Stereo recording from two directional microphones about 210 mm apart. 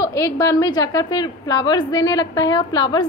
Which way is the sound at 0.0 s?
15° left (ahead or behind).